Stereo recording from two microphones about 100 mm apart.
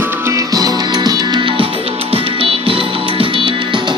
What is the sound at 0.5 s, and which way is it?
Music, 40° right (ahead or behind).